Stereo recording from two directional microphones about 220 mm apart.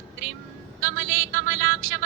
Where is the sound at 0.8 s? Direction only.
60° right (ahead or behind).